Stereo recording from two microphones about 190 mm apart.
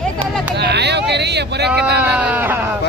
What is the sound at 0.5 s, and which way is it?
Speech, 60° right (ahead or behind).